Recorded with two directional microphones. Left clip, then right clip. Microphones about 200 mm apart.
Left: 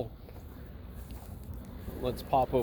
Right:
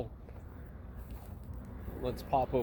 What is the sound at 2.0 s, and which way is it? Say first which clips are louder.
Speech: left 3 dB; 25° left (ahead or behind).